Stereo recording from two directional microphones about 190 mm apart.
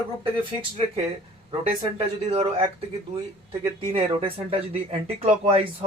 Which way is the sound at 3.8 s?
30° right (ahead or behind).